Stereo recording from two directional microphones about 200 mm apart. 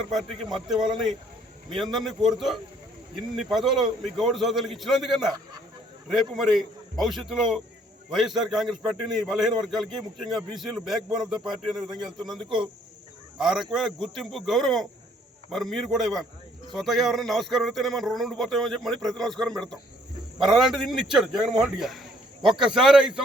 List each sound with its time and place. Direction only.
0.4 s a man's voice: centre (ahead or behind)
12.4 s speech: 25° right (ahead or behind)
13.4 s a man's voice: centre (ahead or behind)